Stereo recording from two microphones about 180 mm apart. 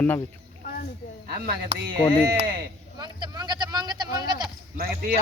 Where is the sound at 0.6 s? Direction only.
55° left (ahead or behind).